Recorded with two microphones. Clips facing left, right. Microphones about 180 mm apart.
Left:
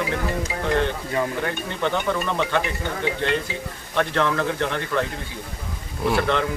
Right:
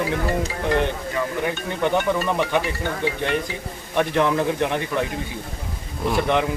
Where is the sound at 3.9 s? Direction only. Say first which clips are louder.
Right 2 dB; 15° right (ahead or behind).